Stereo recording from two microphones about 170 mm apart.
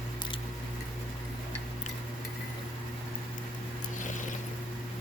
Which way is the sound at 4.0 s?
50° left (ahead or behind).